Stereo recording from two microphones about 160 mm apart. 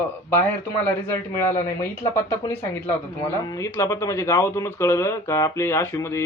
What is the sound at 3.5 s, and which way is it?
Speech, 20° left (ahead or behind).